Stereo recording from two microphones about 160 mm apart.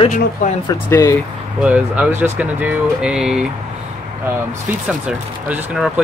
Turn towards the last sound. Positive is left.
turn(degrees=-5)  # may be behind; listen again after turning